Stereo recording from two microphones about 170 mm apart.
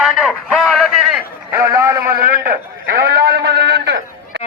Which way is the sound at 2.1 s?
55° right (ahead or behind).